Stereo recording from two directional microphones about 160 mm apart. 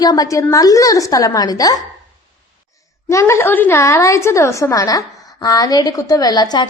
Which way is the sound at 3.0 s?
15° left (ahead or behind).